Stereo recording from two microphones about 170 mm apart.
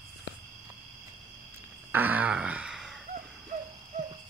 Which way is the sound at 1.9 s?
10° right (ahead or behind).